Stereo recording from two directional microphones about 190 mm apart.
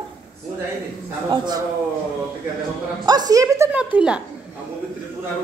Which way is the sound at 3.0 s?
20° right (ahead or behind).